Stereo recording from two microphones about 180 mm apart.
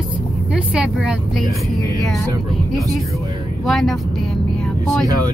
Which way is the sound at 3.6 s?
Centre (ahead or behind).